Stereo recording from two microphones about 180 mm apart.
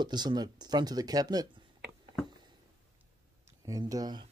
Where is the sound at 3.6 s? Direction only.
20° right (ahead or behind).